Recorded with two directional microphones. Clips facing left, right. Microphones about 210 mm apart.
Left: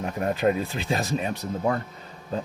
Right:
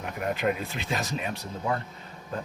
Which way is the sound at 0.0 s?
35° left (ahead or behind).